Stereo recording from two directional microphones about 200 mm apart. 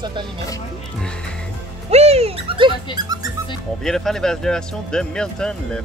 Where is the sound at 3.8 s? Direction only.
Centre (ahead or behind).